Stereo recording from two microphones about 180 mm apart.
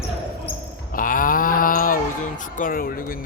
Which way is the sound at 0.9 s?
50° left (ahead or behind).